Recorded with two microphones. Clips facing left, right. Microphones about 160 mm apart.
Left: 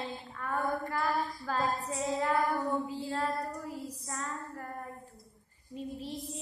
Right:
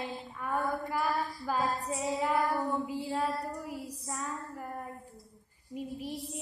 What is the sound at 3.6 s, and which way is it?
Child singing, 15° right (ahead or behind).